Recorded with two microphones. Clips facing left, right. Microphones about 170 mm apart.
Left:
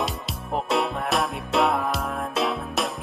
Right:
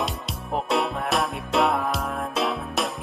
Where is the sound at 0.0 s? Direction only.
Centre (ahead or behind).